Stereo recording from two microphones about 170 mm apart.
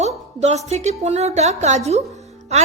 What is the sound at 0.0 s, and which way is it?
A woman's voice, 40° right (ahead or behind).